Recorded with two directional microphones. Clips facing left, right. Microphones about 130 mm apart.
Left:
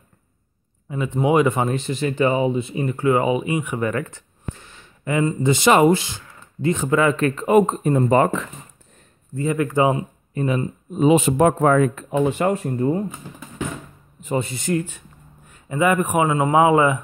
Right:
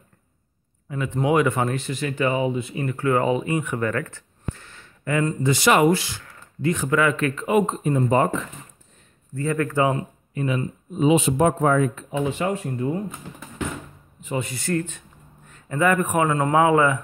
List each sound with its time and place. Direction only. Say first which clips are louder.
0.8 s speech: left 2 dB; 20° left (ahead or behind); by 8.1 s 45° left (ahead or behind)
8.1 s speech: left 3 dB; 75° left (ahead or behind)
9.3 s speech: left 2 dB; 15° left (ahead or behind)
10.3 s speech: left 3 dB; 40° left (ahead or behind)
12.7 s speech: left 5 dB; 35° left (ahead or behind)
14.4 s speech: left 2 dB; 20° left (ahead or behind)